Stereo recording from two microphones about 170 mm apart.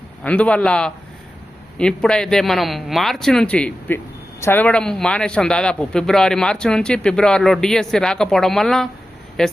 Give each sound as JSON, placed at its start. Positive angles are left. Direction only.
{"t": 0.2, "sound": "a man's voice", "side_deg": 10}